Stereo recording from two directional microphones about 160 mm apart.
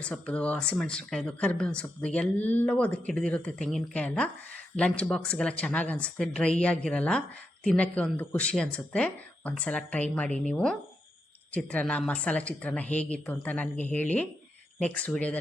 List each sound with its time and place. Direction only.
0.0 s speech: 5° left (ahead or behind)